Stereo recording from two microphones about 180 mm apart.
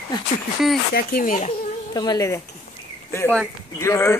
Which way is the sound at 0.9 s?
55° left (ahead or behind).